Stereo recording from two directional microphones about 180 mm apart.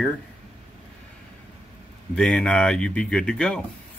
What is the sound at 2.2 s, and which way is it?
Speech, 5° left (ahead or behind).